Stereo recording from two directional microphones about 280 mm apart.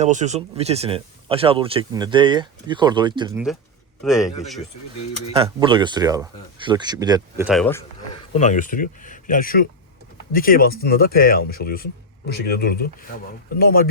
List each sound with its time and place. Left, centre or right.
0.0 s speech: right
4.0 s speech: centre
5.3 s speech: centre
7.4 s speech: centre
8.4 s speech: left